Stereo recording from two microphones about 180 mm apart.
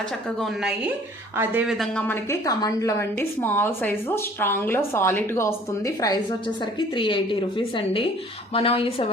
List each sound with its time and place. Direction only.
0.3 s speech: centre (ahead or behind)
2.0 s a woman's voice: 15° left (ahead or behind); by 9.0 s 30° left (ahead or behind)